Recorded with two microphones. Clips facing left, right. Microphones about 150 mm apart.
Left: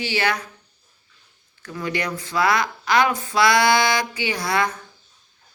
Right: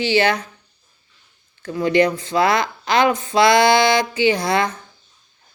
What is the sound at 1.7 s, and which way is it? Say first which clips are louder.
Speech: right 10 dB; 25° right (ahead or behind).